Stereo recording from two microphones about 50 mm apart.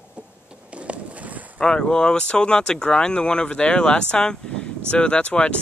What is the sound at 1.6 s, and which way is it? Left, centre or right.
Speech, centre.